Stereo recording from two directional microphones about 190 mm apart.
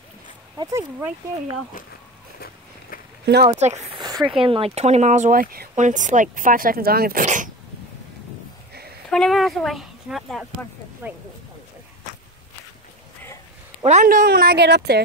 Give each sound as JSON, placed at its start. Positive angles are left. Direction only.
{"t": 0.6, "sound": "speech", "side_deg": -15}
{"t": 2.9, "sound": "a sound", "side_deg": 45}
{"t": 3.4, "sound": "speech", "side_deg": -35}
{"t": 4.0, "sound": "a sound", "side_deg": -20}
{"t": 4.5, "sound": "speech", "side_deg": -30}
{"t": 9.1, "sound": "speech", "side_deg": 0}
{"t": 13.8, "sound": "speech", "side_deg": -40}